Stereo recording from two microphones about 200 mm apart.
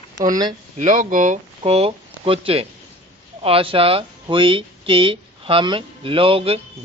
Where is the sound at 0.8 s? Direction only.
40° right (ahead or behind).